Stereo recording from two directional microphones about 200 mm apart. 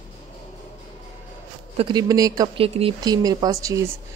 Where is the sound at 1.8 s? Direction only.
20° right (ahead or behind).